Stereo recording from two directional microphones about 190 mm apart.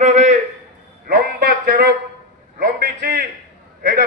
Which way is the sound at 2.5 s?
60° right (ahead or behind).